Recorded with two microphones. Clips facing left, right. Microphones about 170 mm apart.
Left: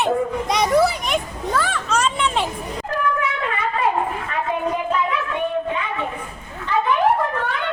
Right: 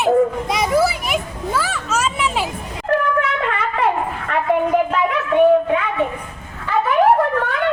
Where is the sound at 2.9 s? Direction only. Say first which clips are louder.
Right 5 dB; 65° right (ahead or behind).